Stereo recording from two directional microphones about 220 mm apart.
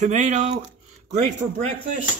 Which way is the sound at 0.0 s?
35° right (ahead or behind).